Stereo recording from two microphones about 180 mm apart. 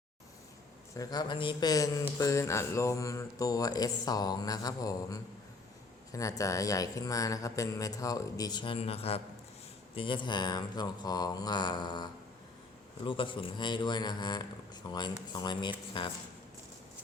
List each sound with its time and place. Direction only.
0.9 s speech: 20° left (ahead or behind)
13.1 s speech: 30° left (ahead or behind)